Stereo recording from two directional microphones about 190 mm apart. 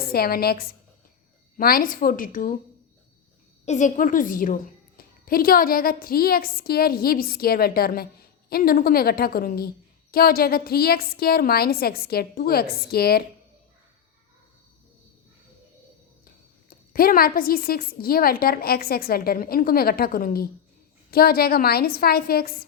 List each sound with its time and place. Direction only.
0.1 s a woman's voice: 55° left (ahead or behind)
3.7 s a woman's voice: 40° left (ahead or behind)
16.6 s a woman's voice: 50° left (ahead or behind)